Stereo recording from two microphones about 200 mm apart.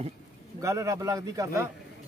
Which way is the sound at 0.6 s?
15° right (ahead or behind).